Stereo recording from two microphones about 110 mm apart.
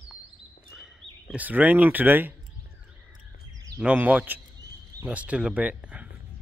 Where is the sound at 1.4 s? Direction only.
15° right (ahead or behind).